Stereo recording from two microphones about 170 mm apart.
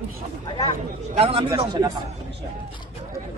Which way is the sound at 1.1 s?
35° right (ahead or behind).